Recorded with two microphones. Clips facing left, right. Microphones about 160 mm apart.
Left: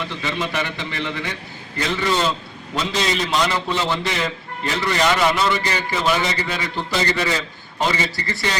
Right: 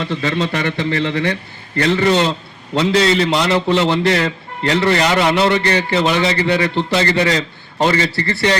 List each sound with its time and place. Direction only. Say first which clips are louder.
0.2 s a man's voice: right 3 dB; 70° right (ahead or behind)